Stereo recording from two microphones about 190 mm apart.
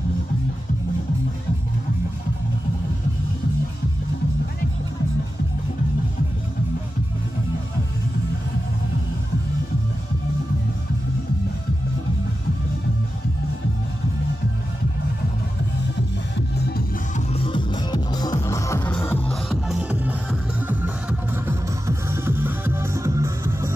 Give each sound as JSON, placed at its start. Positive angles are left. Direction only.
{"t": 16.3, "sound": "music", "side_deg": 60}
{"t": 17.3, "sound": "music", "side_deg": 25}
{"t": 19.5, "sound": "music", "side_deg": -5}